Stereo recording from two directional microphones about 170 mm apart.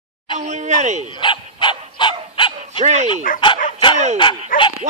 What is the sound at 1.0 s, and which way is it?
Dog, 30° left (ahead or behind).